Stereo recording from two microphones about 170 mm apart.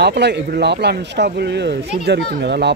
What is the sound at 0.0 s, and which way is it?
Speech, 80° right.